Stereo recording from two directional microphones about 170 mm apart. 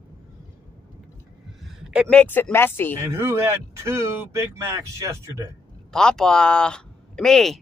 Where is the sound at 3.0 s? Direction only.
15° right (ahead or behind).